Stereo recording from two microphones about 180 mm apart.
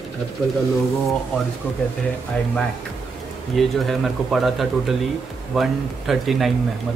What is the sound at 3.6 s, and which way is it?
Speech, centre (ahead or behind).